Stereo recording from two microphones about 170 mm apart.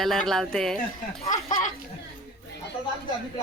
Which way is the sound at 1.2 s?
50° left (ahead or behind).